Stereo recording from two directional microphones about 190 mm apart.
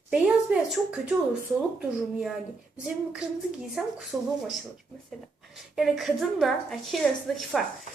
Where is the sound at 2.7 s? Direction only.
5° right (ahead or behind).